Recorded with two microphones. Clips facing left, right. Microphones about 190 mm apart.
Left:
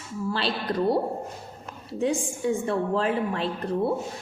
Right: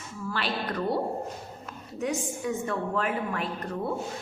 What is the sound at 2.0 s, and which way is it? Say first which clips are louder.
A woman's voice: left 4 dB; 30° left (ahead or behind).